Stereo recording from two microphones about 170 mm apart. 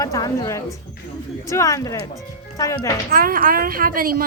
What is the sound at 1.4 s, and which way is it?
Speech, 20° left (ahead or behind).